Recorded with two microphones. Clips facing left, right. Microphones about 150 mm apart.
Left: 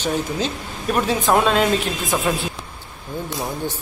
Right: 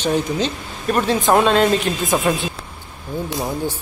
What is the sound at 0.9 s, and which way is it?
Speech, centre (ahead or behind).